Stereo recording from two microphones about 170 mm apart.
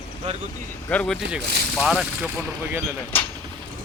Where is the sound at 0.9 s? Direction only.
5° left (ahead or behind).